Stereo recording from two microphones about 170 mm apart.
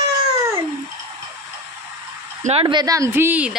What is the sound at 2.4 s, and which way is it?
Speech, 35° right (ahead or behind).